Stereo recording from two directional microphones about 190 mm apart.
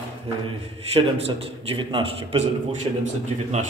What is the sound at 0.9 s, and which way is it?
A man's voice, 30° right (ahead or behind).